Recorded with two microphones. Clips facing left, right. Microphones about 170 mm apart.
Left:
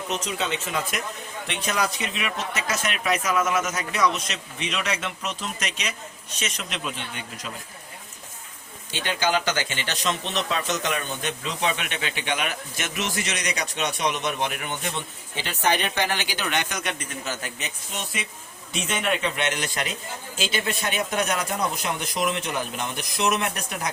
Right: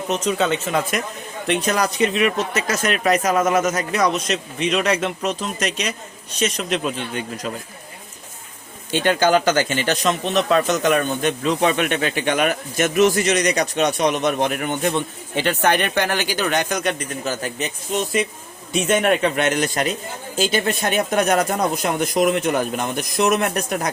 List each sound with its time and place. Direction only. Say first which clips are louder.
0.1 s speech: right 9 dB; 45° right (ahead or behind)
8.9 s speech: right 8 dB; 50° right (ahead or behind)